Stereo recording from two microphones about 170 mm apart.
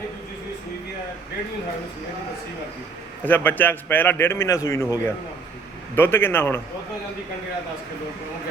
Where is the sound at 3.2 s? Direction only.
10° left (ahead or behind).